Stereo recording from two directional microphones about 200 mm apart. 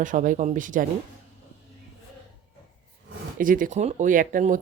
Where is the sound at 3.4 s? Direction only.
45° right (ahead or behind).